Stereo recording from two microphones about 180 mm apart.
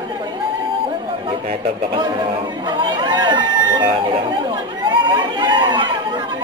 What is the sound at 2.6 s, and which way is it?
Speech, 25° right (ahead or behind).